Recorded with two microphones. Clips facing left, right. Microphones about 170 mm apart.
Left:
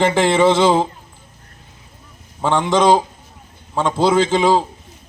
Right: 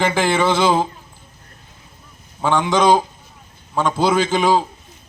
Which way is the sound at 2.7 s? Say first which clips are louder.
Left 2 dB; 30° left (ahead or behind).